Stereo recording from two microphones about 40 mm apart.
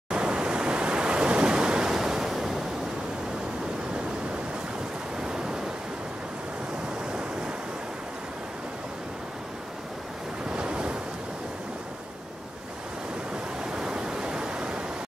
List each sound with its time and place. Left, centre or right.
0.1 s waves: right
5.2 s waves: centre
10.5 s waves: right
13.7 s waves: centre